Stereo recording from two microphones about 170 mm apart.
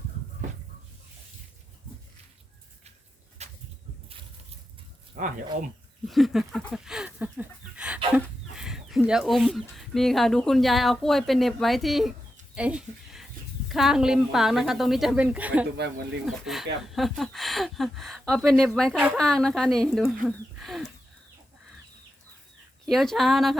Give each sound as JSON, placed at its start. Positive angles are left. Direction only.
{"t": 3.4, "sound": "a sound", "side_deg": -40}
{"t": 6.1, "sound": "speech", "side_deg": 0}
{"t": 6.7, "sound": "chicken", "side_deg": -5}
{"t": 12.5, "sound": "speech", "side_deg": -5}
{"t": 20.2, "sound": "a sound", "side_deg": 0}
{"t": 22.9, "sound": "speech", "side_deg": 0}